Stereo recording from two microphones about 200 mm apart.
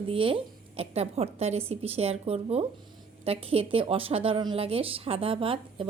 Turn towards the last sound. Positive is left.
turn(degrees=-25)  # may be behind; listen again after turning